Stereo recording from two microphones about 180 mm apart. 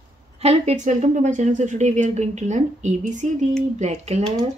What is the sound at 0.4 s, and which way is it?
Speech, 35° right (ahead or behind).